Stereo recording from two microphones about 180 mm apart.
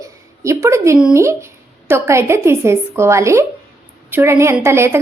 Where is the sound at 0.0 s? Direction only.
15° right (ahead or behind).